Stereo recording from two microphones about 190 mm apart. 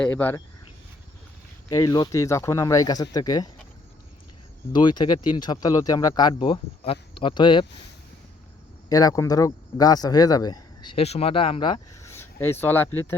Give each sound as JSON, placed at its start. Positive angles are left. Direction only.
{"t": 0.0, "sound": "speech", "side_deg": 10}
{"t": 1.7, "sound": "speech", "side_deg": 20}
{"t": 4.7, "sound": "speech", "side_deg": 25}
{"t": 8.9, "sound": "speech", "side_deg": 20}
{"t": 12.1, "sound": "speech", "side_deg": 10}